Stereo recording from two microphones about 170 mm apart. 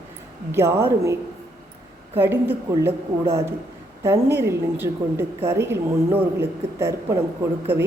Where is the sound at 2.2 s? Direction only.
15° right (ahead or behind).